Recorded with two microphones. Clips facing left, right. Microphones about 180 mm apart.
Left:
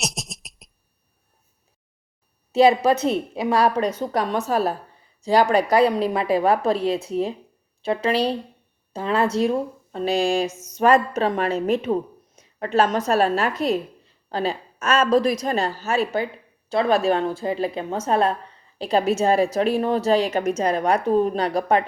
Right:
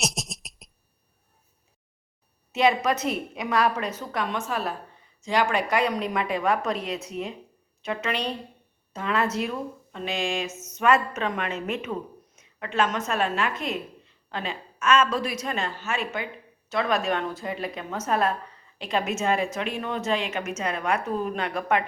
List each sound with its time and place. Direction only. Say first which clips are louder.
0.0 s beatboxing: even; centre (ahead or behind)
2.5 s a woman's voice: left 6 dB; 30° left (ahead or behind)